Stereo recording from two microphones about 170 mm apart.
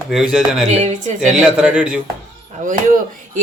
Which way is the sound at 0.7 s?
40° right (ahead or behind).